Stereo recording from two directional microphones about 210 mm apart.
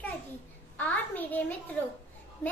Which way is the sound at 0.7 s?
10° left (ahead or behind).